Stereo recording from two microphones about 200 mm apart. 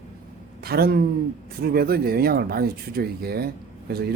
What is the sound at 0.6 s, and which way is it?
Speech, 50° right (ahead or behind).